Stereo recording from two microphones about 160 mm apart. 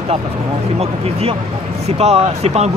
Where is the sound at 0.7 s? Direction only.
40° right (ahead or behind).